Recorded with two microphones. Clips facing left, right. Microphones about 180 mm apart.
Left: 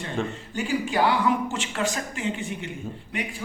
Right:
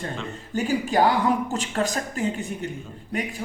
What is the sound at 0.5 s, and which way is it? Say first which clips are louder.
A man's voice: right 3 dB; 40° right (ahead or behind).